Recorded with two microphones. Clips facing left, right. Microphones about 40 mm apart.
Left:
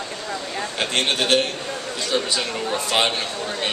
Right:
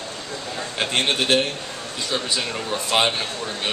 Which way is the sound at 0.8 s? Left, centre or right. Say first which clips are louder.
Even; centre.